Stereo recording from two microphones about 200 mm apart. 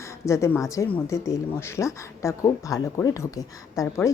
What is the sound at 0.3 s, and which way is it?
Speech, 15° left (ahead or behind).